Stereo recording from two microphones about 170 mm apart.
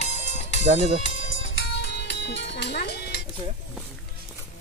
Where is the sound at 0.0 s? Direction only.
45° left (ahead or behind).